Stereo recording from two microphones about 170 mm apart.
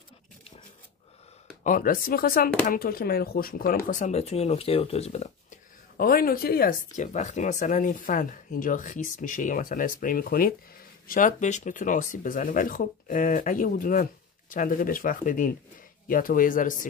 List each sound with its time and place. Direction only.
1.6 s speech: 50° left (ahead or behind)
5.9 s speech: 60° left (ahead or behind)